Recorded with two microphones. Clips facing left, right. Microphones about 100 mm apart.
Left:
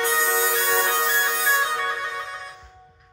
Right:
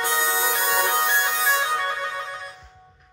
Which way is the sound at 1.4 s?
15° right (ahead or behind).